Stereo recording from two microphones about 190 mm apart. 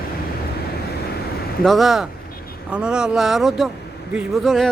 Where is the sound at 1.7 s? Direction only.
Centre (ahead or behind).